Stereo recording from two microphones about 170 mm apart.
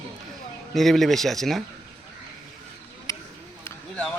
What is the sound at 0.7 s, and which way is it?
Speech, centre (ahead or behind).